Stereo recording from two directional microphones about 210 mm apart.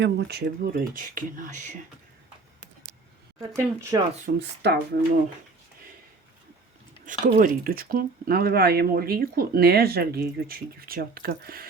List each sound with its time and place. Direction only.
0.0 s speech: 50° right (ahead or behind)
3.5 s speech: 15° right (ahead or behind)
4.4 s speech: 55° right (ahead or behind)
7.0 s speech: 40° right (ahead or behind)